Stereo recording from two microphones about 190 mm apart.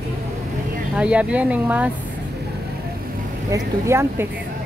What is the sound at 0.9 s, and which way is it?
Speech, 5° right (ahead or behind).